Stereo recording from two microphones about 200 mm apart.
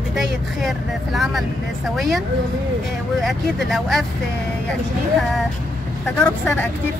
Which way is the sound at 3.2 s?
Centre (ahead or behind).